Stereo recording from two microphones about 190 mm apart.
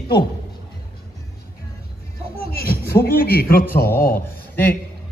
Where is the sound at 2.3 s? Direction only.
55° left (ahead or behind).